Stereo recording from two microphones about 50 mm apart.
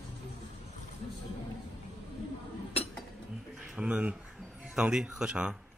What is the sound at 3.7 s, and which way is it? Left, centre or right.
Speech, right.